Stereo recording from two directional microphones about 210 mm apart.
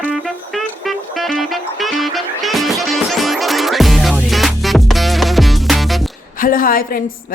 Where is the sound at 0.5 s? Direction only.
Centre (ahead or behind).